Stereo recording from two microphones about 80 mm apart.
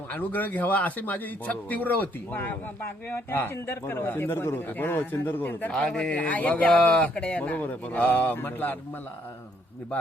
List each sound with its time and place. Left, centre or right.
0.1 s a man's voice: left
5.7 s speech: centre